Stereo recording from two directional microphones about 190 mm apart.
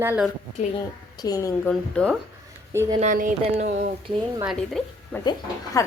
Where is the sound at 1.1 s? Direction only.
20° left (ahead or behind).